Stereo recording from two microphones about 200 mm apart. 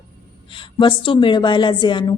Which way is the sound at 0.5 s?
25° left (ahead or behind).